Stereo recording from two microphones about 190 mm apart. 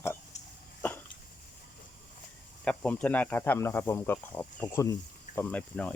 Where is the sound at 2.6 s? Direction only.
5° left (ahead or behind).